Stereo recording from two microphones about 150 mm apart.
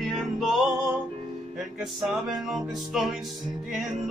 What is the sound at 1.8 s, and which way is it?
Music, centre (ahead or behind).